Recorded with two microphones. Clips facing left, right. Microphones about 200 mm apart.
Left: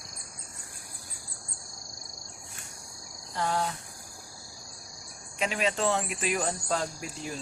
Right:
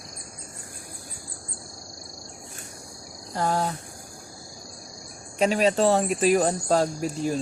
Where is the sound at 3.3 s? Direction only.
40° right (ahead or behind).